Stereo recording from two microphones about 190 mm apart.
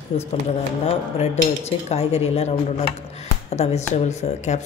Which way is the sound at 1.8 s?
35° left (ahead or behind).